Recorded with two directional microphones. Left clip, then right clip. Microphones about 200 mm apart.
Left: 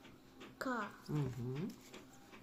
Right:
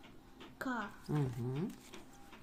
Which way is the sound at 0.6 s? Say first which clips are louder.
Even; 5° right (ahead or behind).